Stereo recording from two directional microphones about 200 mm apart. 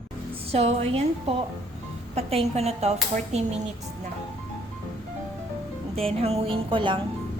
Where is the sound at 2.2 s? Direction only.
30° right (ahead or behind).